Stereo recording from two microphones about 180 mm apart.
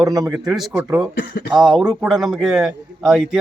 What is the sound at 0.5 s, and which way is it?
Speech, 5° right (ahead or behind).